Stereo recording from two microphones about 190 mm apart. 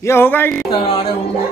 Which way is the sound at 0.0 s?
10° left (ahead or behind).